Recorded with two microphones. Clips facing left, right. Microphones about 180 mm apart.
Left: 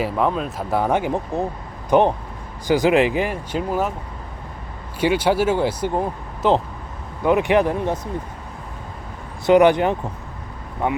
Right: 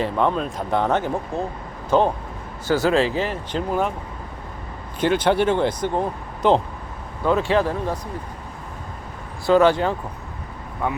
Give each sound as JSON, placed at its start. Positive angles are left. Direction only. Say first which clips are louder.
{"t": 0.0, "sound": "speech", "louder": "even", "side_deg": 5}
{"t": 4.9, "sound": "speech", "louder": "even", "side_deg": 10}
{"t": 7.3, "sound": "speech", "louder": "left 3 dB", "side_deg": 15}
{"t": 9.5, "sound": "speech", "louder": "left 2 dB", "side_deg": 20}